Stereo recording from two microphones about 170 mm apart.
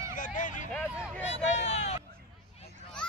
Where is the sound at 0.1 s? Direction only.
50° left (ahead or behind).